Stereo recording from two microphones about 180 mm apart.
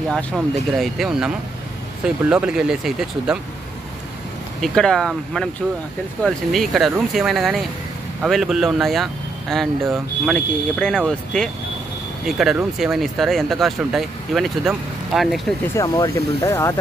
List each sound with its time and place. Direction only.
0.7 s speech: centre (ahead or behind)
4.6 s speech: 5° left (ahead or behind)
15.7 s speech: 20° left (ahead or behind)